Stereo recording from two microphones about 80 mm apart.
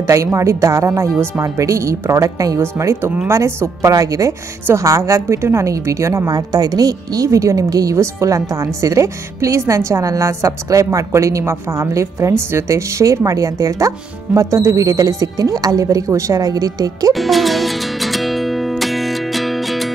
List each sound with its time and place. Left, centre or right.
0.0 s a woman's voice: right
2.6 s a woman's voice: right
17.1 s music: centre